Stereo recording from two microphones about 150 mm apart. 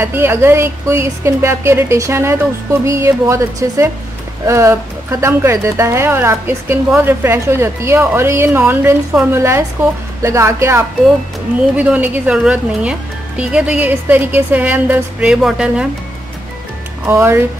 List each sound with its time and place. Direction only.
0.0 s speech: 15° right (ahead or behind)
17.0 s speech: 15° right (ahead or behind)